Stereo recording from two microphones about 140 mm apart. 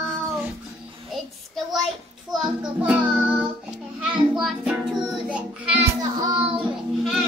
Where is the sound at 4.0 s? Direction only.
5° right (ahead or behind).